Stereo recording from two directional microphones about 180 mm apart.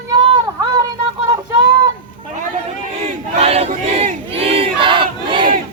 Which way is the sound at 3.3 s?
35° right (ahead or behind).